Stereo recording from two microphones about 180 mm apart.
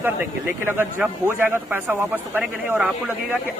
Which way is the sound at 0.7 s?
10° right (ahead or behind).